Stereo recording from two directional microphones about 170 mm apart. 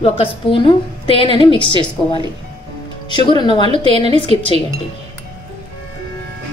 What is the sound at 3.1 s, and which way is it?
Speech, 25° left (ahead or behind).